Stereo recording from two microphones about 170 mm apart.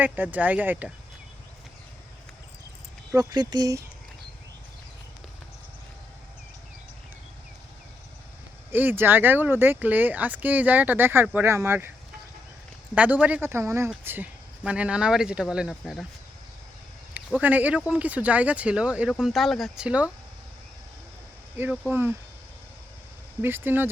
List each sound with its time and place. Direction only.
0.0 s speech: 10° right (ahead or behind)
3.1 s speech: 20° right (ahead or behind)
8.7 s speech: 10° right (ahead or behind)
12.9 s speech: 10° right (ahead or behind)
17.2 s speech: 10° right (ahead or behind)
21.5 s speech: 10° right (ahead or behind)
23.4 s speech: 10° right (ahead or behind)